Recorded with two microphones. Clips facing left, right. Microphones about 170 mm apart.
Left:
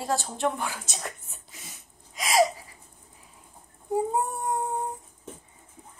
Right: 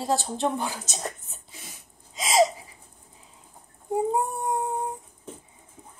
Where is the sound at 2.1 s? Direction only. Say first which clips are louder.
Right 1 dB; 25° right (ahead or behind).